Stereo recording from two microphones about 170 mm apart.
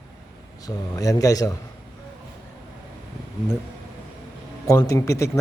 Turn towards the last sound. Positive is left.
turn(degrees=20)  # may be behind; listen again after turning